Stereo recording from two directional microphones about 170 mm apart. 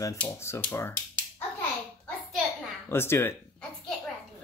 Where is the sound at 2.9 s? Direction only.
15° left (ahead or behind).